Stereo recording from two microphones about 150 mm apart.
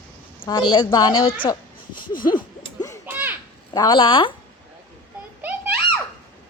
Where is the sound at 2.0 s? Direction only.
65° left (ahead or behind).